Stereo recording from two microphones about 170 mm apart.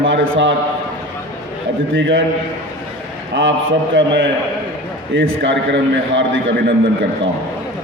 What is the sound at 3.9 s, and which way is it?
A man's voice, 90° right.